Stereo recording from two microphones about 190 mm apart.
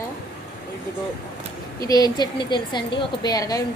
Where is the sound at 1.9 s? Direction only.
20° left (ahead or behind).